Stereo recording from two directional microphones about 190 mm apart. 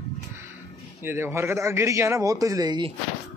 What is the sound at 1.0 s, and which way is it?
A man's voice, 15° right (ahead or behind).